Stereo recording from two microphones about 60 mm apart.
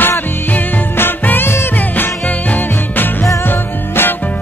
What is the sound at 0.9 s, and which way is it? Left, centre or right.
Music, left.